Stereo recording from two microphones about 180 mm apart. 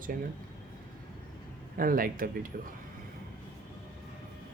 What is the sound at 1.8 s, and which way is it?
Speech, 50° right (ahead or behind).